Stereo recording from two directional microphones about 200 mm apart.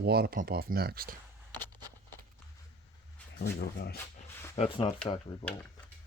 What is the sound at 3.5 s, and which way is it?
Speech, 50° left (ahead or behind).